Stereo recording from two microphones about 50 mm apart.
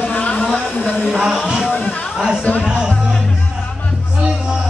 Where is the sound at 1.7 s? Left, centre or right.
Left.